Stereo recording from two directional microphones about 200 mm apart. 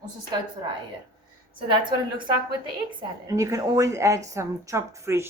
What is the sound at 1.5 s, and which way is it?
Speech, 25° right (ahead or behind).